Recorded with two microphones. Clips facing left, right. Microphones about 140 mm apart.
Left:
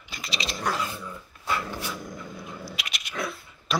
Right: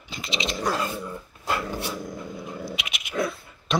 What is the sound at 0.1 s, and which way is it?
Dog, 25° right (ahead or behind).